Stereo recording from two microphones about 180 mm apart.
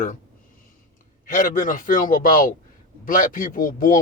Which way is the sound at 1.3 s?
45° left (ahead or behind).